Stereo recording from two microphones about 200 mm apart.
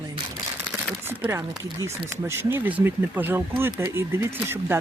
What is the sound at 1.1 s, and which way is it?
Speech, 10° right (ahead or behind).